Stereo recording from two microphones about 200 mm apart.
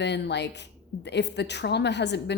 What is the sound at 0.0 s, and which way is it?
A woman's voice, 60° left (ahead or behind).